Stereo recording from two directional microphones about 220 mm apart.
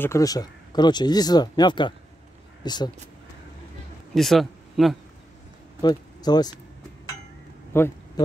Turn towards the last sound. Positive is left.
turn(degrees=10)  # may be behind; listen again after turning